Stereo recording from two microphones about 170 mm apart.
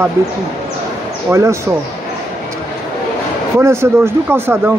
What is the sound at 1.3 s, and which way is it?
Speech, 15° right (ahead or behind).